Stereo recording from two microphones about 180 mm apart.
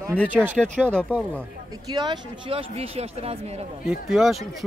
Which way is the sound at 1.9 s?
25° right (ahead or behind).